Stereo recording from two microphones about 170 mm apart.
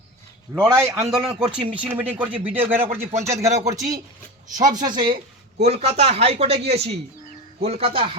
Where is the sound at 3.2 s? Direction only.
15° right (ahead or behind).